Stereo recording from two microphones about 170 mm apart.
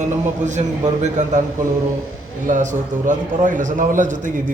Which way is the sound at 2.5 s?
50° right (ahead or behind).